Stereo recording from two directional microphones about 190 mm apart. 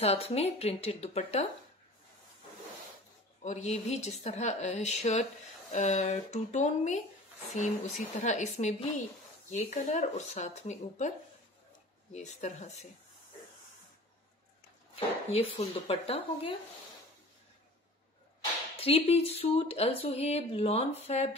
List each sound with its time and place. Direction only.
0.0 s speech: 35° left (ahead or behind)
3.4 s speech: 35° left (ahead or behind)
15.0 s speech: 30° left (ahead or behind)
18.8 s speech: 30° left (ahead or behind)